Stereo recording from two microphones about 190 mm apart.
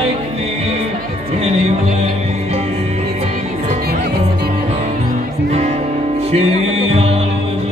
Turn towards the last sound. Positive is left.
turn(degrees=-30)  # may be behind; listen again after turning